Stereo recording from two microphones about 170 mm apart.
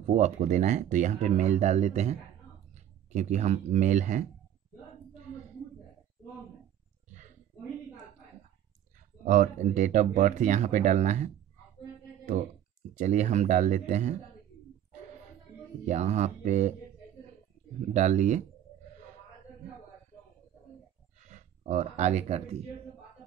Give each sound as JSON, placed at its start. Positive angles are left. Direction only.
{"t": 0.0, "sound": "speech", "side_deg": -45}
{"t": 7.1, "sound": "a sound", "side_deg": -45}
{"t": 9.2, "sound": "speech", "side_deg": -45}
{"t": 12.9, "sound": "speech", "side_deg": -45}
{"t": 15.8, "sound": "speech", "side_deg": -40}
{"t": 17.9, "sound": "speech", "side_deg": -45}
{"t": 21.2, "sound": "speech", "side_deg": -45}